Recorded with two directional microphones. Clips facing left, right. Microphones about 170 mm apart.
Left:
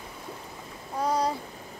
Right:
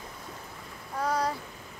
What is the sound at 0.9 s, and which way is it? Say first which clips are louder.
Speech: left 2 dB; 15° left (ahead or behind).